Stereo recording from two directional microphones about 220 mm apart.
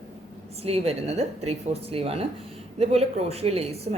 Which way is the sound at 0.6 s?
25° right (ahead or behind).